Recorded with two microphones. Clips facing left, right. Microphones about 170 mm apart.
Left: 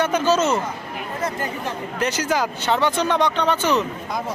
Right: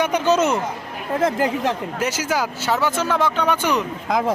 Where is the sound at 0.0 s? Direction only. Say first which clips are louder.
Right 1 dB; 15° right (ahead or behind).